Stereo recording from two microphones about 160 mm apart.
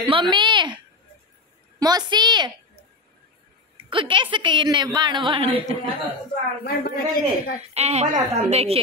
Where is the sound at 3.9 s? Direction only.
30° right (ahead or behind).